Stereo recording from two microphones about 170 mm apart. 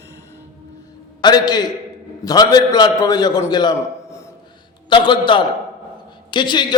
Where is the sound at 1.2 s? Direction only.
25° left (ahead or behind).